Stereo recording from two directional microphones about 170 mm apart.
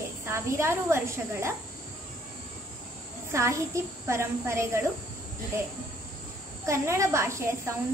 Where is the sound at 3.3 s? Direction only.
15° right (ahead or behind).